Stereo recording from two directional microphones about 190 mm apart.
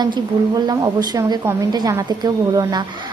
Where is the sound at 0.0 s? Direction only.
20° right (ahead or behind).